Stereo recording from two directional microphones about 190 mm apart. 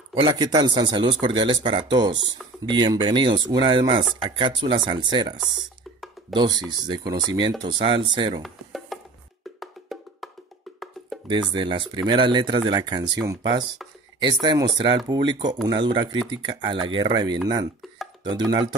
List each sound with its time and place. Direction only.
0.1 s speech: 25° right (ahead or behind)
6.3 s speech: 20° right (ahead or behind)
8.4 s music: centre (ahead or behind)
9.6 s wood block: centre (ahead or behind)
11.5 s speech: 25° right (ahead or behind)
17.8 s a sound: centre (ahead or behind)
18.2 s speech: 20° right (ahead or behind)